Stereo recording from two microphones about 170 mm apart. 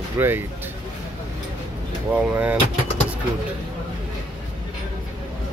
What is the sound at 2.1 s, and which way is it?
Speech, 10° right (ahead or behind).